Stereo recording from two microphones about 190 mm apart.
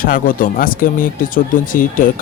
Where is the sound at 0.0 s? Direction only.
45° left (ahead or behind).